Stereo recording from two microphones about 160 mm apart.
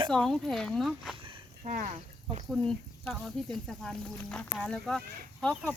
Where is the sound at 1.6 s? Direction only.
50° right (ahead or behind).